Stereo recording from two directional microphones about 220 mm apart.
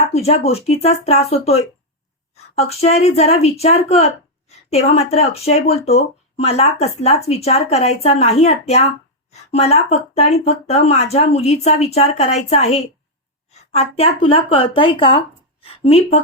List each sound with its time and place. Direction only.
0.1 s a woman's voice: 30° left (ahead or behind)